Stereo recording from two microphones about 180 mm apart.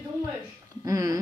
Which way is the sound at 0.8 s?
20° right (ahead or behind).